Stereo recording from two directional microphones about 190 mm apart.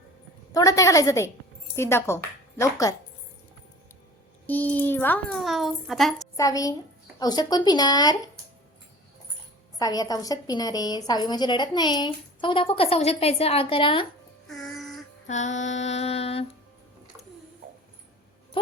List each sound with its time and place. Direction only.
0.5 s a woman's voice: 20° left (ahead or behind)
4.4 s a child's voice: 10° left (ahead or behind)
6.3 s a woman's voice: 20° left (ahead or behind)
9.7 s a woman's voice: 20° left (ahead or behind)
14.4 s music: centre (ahead or behind)
15.3 s mantra: 40° left (ahead or behind)